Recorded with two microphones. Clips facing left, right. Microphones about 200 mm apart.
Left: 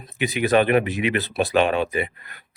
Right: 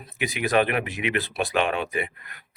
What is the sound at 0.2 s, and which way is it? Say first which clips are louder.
Speech: left 4 dB; 30° left (ahead or behind).